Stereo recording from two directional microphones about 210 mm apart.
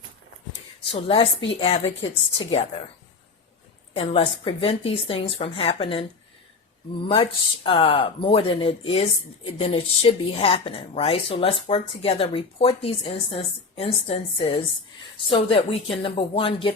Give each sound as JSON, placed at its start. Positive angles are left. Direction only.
{"t": 0.9, "sound": "a woman's voice", "side_deg": 25}
{"t": 3.9, "sound": "a woman's voice", "side_deg": 25}
{"t": 7.1, "sound": "a woman's voice", "side_deg": 25}